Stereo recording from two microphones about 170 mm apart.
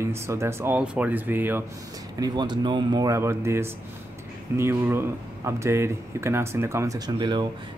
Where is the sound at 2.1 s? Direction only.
25° right (ahead or behind).